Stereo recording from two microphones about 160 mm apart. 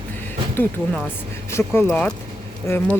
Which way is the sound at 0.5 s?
10° left (ahead or behind).